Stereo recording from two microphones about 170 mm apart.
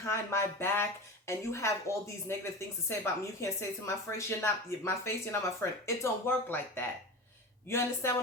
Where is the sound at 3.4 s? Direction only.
15° left (ahead or behind).